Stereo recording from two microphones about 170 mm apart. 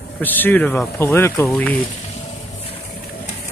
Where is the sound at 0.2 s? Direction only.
10° left (ahead or behind).